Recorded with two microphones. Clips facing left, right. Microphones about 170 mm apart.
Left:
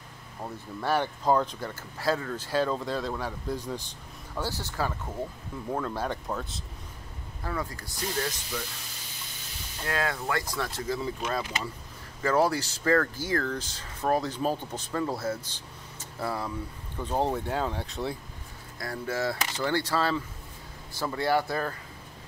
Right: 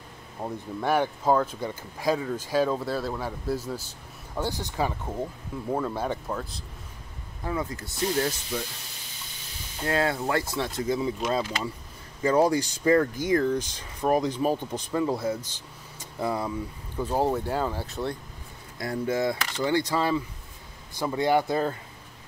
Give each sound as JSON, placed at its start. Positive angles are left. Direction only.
{"t": 0.4, "sound": "speech", "side_deg": -15}
{"t": 5.7, "sound": "speech", "side_deg": -10}
{"t": 7.4, "sound": "speech", "side_deg": -20}
{"t": 9.8, "sound": "speech", "side_deg": -25}
{"t": 11.0, "sound": "speech", "side_deg": -15}
{"t": 17.0, "sound": "speech", "side_deg": -5}
{"t": 18.8, "sound": "speech", "side_deg": -20}